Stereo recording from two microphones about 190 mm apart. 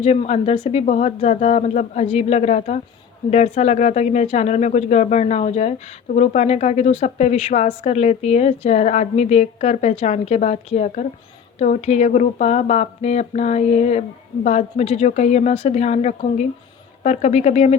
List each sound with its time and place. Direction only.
0.0 s a woman's voice: 35° left (ahead or behind)